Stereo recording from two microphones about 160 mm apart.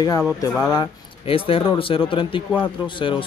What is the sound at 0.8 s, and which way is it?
Speech, 35° left (ahead or behind).